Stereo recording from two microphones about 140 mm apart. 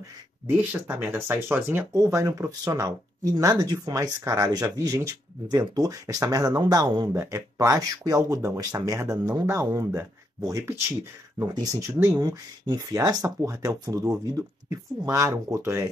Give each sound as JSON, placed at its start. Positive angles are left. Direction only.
{"t": 0.5, "sound": "speech", "side_deg": -15}